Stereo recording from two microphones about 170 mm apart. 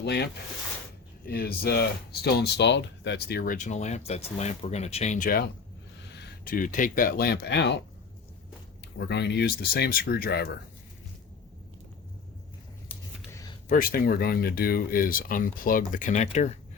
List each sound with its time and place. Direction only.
0.0 s speech: 75° left (ahead or behind)
1.2 s speech: 65° left (ahead or behind)
6.1 s a sound: 90° left
6.4 s speech: 55° left (ahead or behind); by 7.8 s 85° left
9.0 s speech: 90° left; by 10.6 s 70° left (ahead or behind)
13.3 s a sound: 20° left (ahead or behind)
13.7 s speech: 55° left (ahead or behind)